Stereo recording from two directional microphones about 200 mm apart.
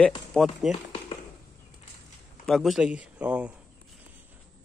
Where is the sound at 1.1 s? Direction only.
30° left (ahead or behind).